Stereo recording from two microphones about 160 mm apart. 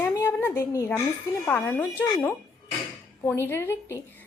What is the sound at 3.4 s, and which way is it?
Speech, 15° left (ahead or behind).